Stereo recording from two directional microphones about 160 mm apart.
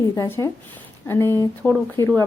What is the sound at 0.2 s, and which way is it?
Speech, 20° left (ahead or behind).